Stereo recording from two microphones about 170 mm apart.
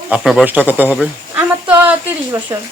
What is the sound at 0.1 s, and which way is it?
A woman's voice, centre (ahead or behind).